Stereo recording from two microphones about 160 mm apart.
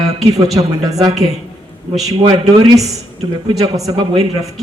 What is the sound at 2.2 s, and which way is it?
A man's voice, 25° right (ahead or behind).